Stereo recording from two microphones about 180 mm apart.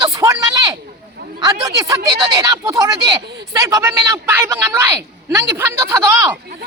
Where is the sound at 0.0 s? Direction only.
20° right (ahead or behind).